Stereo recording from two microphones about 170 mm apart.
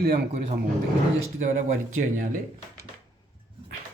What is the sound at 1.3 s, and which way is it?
Speech, 45° right (ahead or behind).